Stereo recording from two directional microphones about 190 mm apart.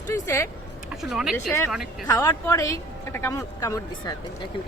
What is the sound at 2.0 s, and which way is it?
Speech, 15° left (ahead or behind).